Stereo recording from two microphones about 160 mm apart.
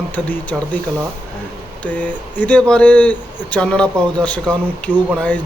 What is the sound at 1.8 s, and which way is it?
Speech, 10° left (ahead or behind).